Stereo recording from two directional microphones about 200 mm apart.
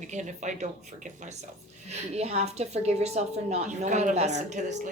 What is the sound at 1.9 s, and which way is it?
Speech, 30° right (ahead or behind).